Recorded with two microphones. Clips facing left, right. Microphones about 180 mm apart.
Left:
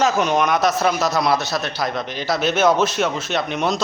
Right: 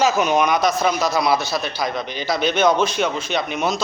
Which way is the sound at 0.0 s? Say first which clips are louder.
Right 1 dB; 5° right (ahead or behind).